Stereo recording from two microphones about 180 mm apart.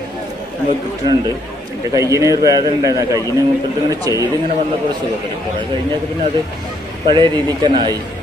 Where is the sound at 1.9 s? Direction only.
20° right (ahead or behind).